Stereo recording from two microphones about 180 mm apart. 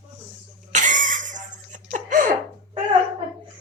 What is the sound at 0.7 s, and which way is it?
Cough, 45° right (ahead or behind).